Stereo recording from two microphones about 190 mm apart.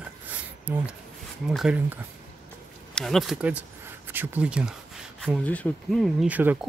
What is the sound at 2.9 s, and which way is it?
Speech, centre (ahead or behind).